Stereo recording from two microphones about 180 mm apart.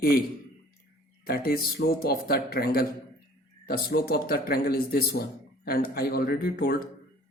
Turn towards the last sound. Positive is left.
turn(degrees=55)  # may be behind; listen again after turning